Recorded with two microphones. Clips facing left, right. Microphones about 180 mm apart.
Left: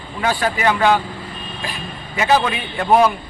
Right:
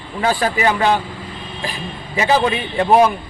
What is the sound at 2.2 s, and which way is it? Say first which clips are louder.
Speech: right 1 dB; 35° right (ahead or behind).